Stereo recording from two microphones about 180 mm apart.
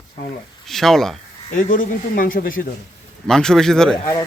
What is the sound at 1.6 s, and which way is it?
Speech, 50° left (ahead or behind).